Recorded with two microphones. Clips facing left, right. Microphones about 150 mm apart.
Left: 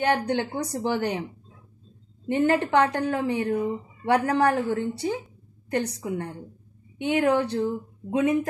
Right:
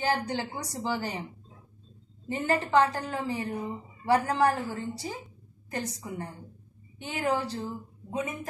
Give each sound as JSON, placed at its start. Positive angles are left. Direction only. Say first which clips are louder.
{"t": 0.0, "sound": "a woman's voice", "louder": "left 5 dB", "side_deg": 60}
{"t": 2.2, "sound": "a woman's voice", "louder": "left 7 dB", "side_deg": 65}